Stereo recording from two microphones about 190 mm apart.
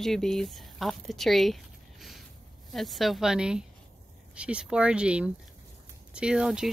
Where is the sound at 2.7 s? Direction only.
Centre (ahead or behind).